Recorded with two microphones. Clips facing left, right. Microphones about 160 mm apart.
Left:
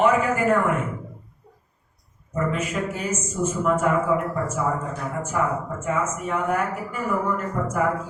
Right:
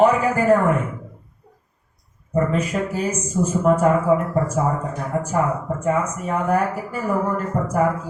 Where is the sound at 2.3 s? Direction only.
35° right (ahead or behind).